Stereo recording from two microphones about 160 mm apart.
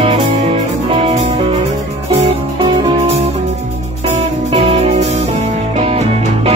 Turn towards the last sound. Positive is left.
turn(degrees=-40)  # may be behind; listen again after turning